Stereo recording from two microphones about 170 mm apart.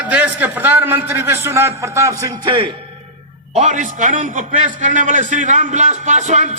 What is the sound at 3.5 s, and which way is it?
A man's voice, 45° right (ahead or behind).